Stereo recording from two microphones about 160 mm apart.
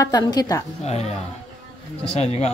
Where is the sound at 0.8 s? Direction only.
40° left (ahead or behind).